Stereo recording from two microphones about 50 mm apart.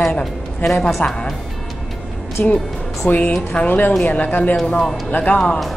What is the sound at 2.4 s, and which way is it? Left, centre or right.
Speech, left.